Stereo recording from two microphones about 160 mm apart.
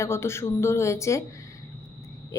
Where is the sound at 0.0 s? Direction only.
15° left (ahead or behind).